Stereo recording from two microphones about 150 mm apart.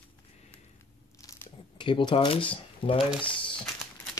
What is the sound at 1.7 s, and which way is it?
Speech, 35° left (ahead or behind).